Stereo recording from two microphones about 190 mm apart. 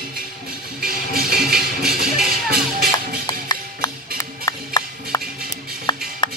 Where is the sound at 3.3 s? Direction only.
20° left (ahead or behind).